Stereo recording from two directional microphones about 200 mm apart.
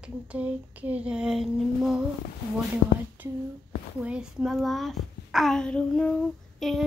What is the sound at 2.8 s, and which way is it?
Speech, 60° left (ahead or behind).